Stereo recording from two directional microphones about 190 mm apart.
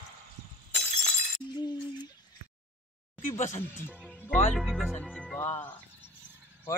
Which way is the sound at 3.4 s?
40° left (ahead or behind).